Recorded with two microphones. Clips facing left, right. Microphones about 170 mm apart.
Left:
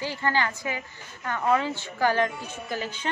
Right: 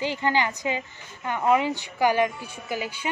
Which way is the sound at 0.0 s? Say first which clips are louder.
Right 2 dB; 15° right (ahead or behind).